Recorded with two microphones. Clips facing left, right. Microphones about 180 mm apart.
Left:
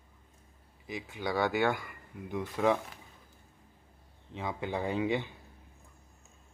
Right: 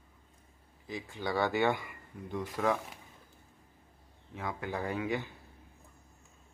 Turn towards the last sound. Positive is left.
turn(degrees=20)  # may be behind; listen again after turning